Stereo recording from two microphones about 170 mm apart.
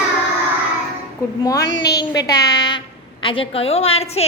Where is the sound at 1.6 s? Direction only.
85° left.